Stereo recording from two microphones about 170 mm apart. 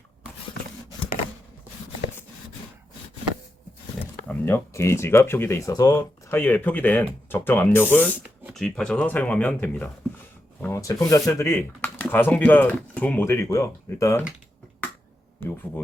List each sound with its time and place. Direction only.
4.3 s speech: 15° left (ahead or behind)
15.4 s speech: 10° left (ahead or behind)